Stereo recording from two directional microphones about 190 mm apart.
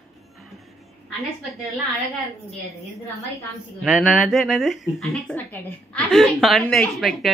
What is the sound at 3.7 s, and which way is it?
A woman's voice, centre (ahead or behind).